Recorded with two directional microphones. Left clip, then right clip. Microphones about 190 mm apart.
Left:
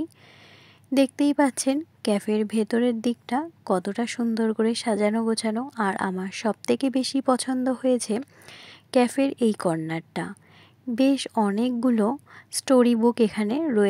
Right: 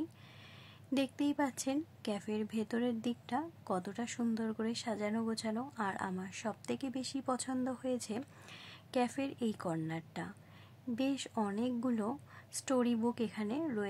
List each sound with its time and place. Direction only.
0.9 s a woman's voice: 40° left (ahead or behind)